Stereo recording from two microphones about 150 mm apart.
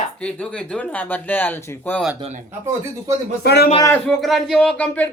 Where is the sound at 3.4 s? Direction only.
90° left.